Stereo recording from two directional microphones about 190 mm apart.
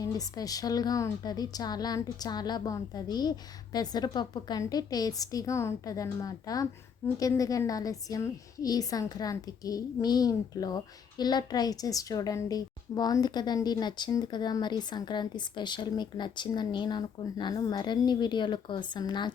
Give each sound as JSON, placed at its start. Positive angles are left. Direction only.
{"t": 0.0, "sound": "a woman's voice", "side_deg": 20}